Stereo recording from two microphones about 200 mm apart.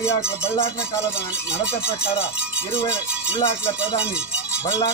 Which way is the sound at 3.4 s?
15° left (ahead or behind).